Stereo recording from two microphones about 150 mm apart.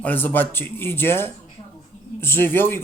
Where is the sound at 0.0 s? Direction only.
10° left (ahead or behind).